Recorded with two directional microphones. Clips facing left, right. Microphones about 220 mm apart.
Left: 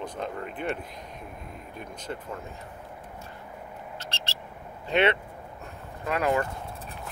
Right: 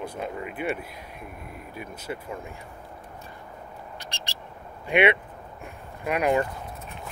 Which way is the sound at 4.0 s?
15° right (ahead or behind).